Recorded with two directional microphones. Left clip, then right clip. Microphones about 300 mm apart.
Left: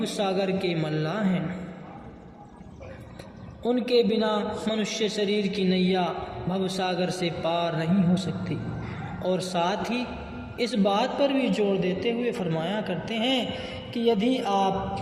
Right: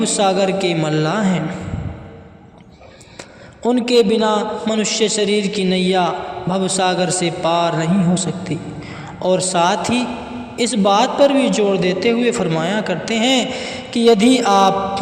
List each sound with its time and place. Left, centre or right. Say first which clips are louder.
0.0 s a man's voice: right 11 dB; right
3.6 s a man's voice: right 8 dB; right